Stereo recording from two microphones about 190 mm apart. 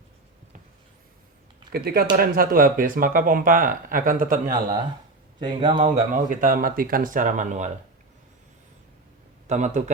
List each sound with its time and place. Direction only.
1.7 s speech: 50° right (ahead or behind)
5.4 s speech: 25° right (ahead or behind)
6.2 s speech: 45° right (ahead or behind)
9.5 s a man's voice: 40° right (ahead or behind)